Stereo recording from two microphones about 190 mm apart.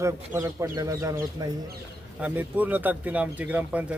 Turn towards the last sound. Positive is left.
turn(degrees=-5)  # may be behind; listen again after turning